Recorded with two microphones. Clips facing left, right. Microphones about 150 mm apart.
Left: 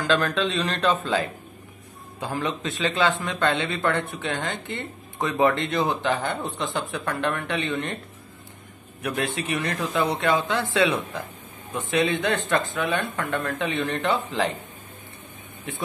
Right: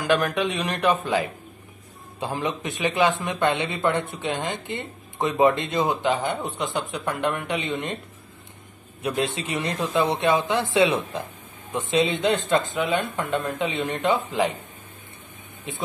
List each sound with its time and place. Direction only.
0.0 s speech: 15° right (ahead or behind)
9.0 s speech: 20° right (ahead or behind)
15.7 s speech: 20° right (ahead or behind)